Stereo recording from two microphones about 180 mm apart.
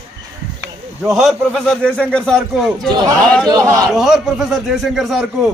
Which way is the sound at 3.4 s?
20° right (ahead or behind).